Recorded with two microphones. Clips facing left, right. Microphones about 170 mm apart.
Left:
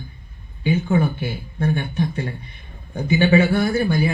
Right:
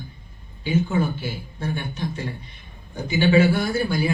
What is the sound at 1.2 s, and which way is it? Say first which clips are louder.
Speech: left 5 dB; 55° left (ahead or behind).